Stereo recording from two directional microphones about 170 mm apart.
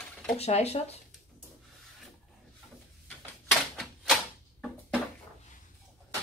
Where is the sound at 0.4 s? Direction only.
40° left (ahead or behind).